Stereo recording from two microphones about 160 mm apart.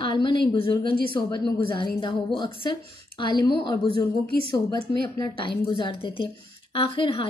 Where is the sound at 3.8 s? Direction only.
30° left (ahead or behind).